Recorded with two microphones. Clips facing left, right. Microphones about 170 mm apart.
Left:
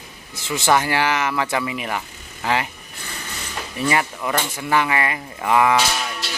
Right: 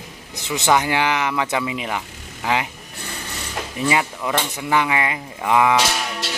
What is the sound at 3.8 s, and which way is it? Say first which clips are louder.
Speech: even; 5° right (ahead or behind).